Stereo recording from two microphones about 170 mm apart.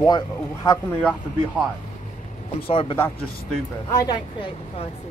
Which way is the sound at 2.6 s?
35° left (ahead or behind).